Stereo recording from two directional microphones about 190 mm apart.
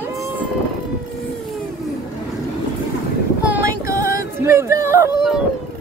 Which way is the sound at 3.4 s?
10° right (ahead or behind).